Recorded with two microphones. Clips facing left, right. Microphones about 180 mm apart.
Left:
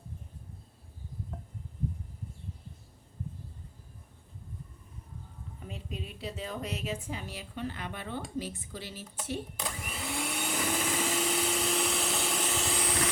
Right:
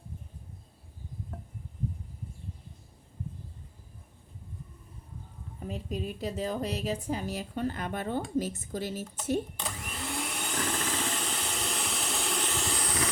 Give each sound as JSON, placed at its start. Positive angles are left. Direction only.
{"t": 5.5, "sound": "a woman's voice", "side_deg": -40}
{"t": 9.6, "sound": "vacuum cleaner", "side_deg": 5}